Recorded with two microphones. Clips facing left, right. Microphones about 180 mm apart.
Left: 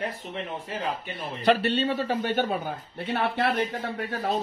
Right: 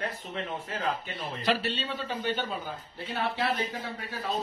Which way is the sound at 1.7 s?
60° left (ahead or behind).